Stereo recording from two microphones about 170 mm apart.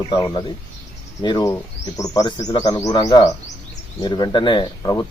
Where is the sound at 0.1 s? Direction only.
20° left (ahead or behind).